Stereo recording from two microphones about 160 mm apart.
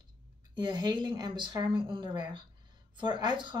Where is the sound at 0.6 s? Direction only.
30° right (ahead or behind).